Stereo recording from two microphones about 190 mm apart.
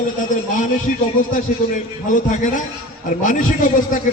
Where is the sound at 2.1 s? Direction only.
45° left (ahead or behind).